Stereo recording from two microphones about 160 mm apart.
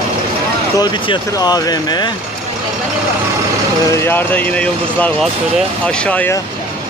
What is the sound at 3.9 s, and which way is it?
Speech, 15° left (ahead or behind).